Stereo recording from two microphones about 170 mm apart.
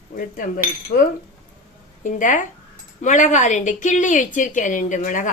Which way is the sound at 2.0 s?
50° left (ahead or behind).